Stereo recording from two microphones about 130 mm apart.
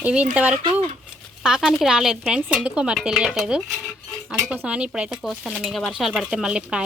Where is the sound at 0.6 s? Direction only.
50° right (ahead or behind).